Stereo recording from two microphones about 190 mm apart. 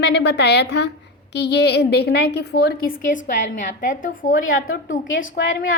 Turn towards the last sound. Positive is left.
turn(degrees=85)